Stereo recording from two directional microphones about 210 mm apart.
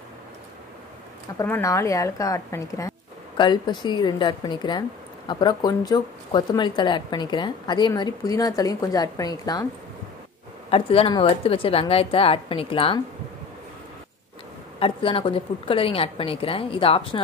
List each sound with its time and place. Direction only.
1.4 s a woman's voice: 15° left (ahead or behind)
10.7 s speech: 25° left (ahead or behind)
14.8 s speech: 25° left (ahead or behind)